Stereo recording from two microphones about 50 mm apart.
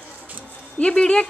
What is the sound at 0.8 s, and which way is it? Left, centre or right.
Speech, centre.